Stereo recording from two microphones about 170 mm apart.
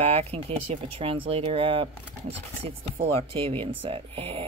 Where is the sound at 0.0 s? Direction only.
35° right (ahead or behind).